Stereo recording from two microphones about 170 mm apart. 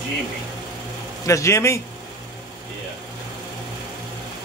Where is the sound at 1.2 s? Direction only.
15° left (ahead or behind).